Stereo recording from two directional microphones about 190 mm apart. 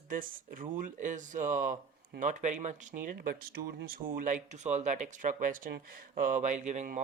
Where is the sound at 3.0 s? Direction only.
50° right (ahead or behind).